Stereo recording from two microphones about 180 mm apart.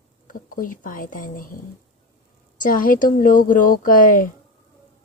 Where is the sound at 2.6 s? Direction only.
50° left (ahead or behind).